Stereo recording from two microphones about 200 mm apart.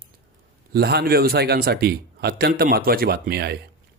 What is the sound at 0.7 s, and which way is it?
Speech, 55° right (ahead or behind).